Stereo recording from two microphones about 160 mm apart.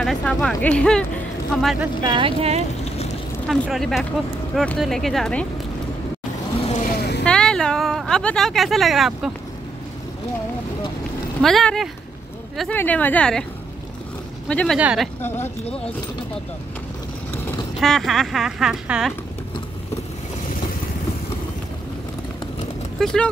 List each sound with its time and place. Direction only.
0.0 s speech: 5° left (ahead or behind)
2.0 s speech: 30° right (ahead or behind)
3.4 s speech: centre (ahead or behind)
6.6 s speech: 45° left (ahead or behind)
7.0 s a sound: 90° left
7.2 s speech: 5° left (ahead or behind)
11.4 s a woman's voice: centre (ahead or behind)
14.5 s a woman's voice: 5° left (ahead or behind)
14.8 s speech: 10° right (ahead or behind)
15.2 s a woman's voice: 15° left (ahead or behind)
17.7 s speech: centre (ahead or behind)
22.9 s speech: 5° left (ahead or behind)